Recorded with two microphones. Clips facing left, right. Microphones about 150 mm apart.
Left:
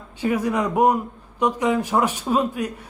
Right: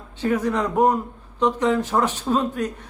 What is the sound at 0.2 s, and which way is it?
Speech, 10° left (ahead or behind).